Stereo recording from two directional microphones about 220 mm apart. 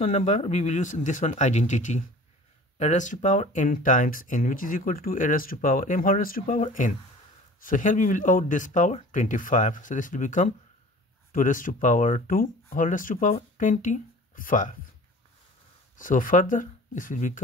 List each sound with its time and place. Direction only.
0.0 s speech: 35° left (ahead or behind)
16.0 s speech: 35° left (ahead or behind)